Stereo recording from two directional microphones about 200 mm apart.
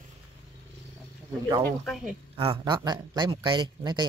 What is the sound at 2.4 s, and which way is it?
Speech, 25° right (ahead or behind).